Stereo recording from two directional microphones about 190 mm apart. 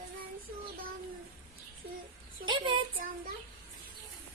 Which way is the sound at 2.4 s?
25° right (ahead or behind).